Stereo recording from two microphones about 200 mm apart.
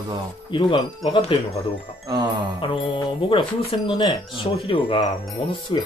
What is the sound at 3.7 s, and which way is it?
Speech, 25° left (ahead or behind).